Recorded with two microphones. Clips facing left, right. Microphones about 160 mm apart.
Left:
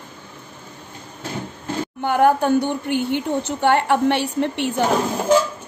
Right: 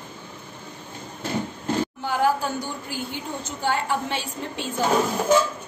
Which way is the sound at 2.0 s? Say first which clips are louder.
Left 9 dB; 60° left (ahead or behind).